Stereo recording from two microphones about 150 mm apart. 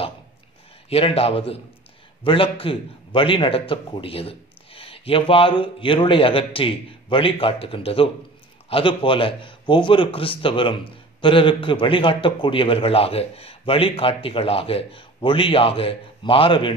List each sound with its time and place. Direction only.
0.8 s a man's voice: 40° left (ahead or behind)